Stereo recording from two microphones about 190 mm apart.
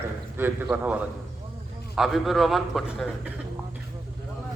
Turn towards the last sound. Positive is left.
turn(degrees=0)  # may be behind; listen again after turning